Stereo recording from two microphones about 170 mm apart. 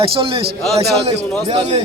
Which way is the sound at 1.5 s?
40° right (ahead or behind).